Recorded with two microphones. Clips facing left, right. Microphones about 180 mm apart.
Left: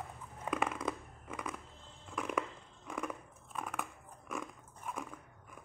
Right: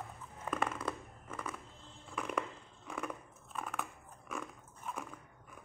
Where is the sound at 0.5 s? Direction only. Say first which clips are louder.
Left 1 dB; 10° left (ahead or behind).